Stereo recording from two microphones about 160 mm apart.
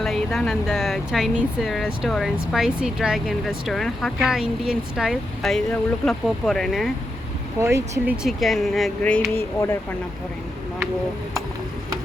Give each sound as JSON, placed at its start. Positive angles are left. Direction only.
{"t": 0.0, "sound": "speech", "side_deg": 0}
{"t": 7.6, "sound": "speech", "side_deg": -15}
{"t": 8.1, "sound": "speech", "side_deg": 0}